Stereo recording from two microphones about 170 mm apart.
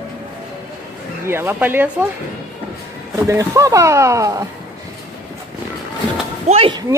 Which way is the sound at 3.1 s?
20° right (ahead or behind).